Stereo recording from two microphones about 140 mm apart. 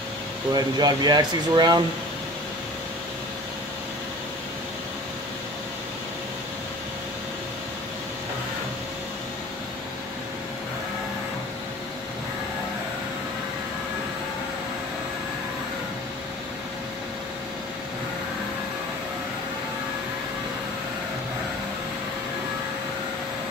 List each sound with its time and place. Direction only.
0.5 s speech: 30° right (ahead or behind)